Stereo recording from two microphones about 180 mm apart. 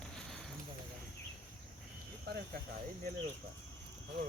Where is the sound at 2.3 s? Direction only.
60° right (ahead or behind).